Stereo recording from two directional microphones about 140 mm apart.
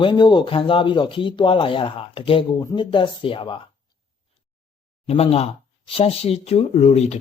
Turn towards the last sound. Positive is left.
turn(degrees=50)  # may be behind; listen again after turning